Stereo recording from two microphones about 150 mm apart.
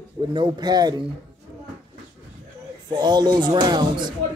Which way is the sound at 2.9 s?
30° right (ahead or behind).